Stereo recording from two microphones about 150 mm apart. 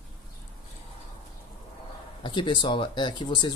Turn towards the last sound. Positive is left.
turn(degrees=30)  # may be behind; listen again after turning